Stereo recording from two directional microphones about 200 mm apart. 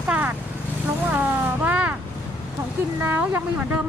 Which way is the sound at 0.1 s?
5° right (ahead or behind).